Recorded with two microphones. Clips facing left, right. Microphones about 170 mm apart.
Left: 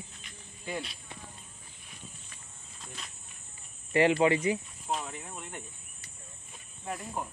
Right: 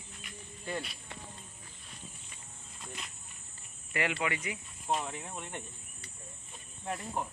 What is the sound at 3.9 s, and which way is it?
Speech, 30° left (ahead or behind).